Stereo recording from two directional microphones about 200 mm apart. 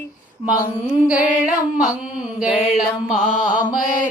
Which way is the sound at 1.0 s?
5° right (ahead or behind).